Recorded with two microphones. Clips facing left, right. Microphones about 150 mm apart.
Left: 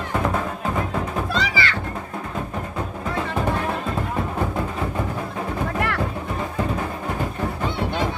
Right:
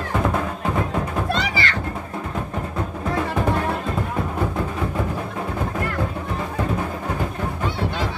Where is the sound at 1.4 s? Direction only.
45° right (ahead or behind).